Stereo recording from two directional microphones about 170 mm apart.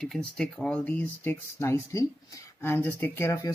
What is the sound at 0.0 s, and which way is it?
Speech, 5° left (ahead or behind).